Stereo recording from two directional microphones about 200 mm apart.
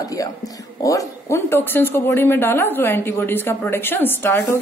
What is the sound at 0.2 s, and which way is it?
Speech, 15° left (ahead or behind).